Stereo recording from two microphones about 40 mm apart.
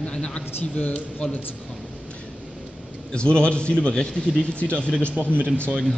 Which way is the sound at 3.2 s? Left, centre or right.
Left.